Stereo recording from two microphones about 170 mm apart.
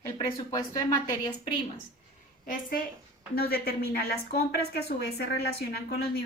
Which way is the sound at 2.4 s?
55° left (ahead or behind).